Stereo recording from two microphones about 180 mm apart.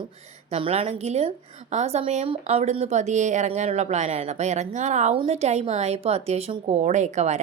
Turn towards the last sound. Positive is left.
turn(degrees=-40)  # may be behind; listen again after turning